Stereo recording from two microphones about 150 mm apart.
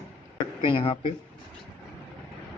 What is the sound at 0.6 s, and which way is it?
Speech, 35° left (ahead or behind).